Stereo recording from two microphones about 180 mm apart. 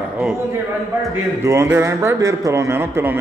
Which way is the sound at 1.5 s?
15° right (ahead or behind).